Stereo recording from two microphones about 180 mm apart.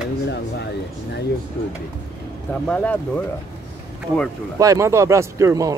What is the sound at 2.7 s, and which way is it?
Speech, 10° left (ahead or behind).